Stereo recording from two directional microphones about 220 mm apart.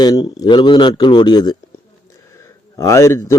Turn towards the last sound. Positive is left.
turn(degrees=15)  # may be behind; listen again after turning